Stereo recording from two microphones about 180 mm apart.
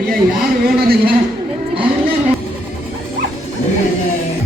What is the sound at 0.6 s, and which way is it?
Speech, 60° right (ahead or behind).